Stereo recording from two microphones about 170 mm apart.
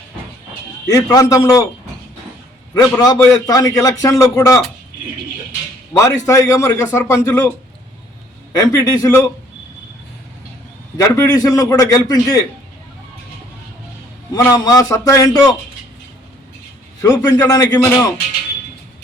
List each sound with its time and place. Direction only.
0.9 s a man's voice: 20° left (ahead or behind)
2.7 s a man's voice: 20° left (ahead or behind)
6.0 s a man's voice: 20° left (ahead or behind)
8.5 s a man's voice: 20° left (ahead or behind)
10.9 s a man's voice: 20° left (ahead or behind)
14.3 s a man's voice: 20° left (ahead or behind)
17.0 s a man's voice: 15° left (ahead or behind)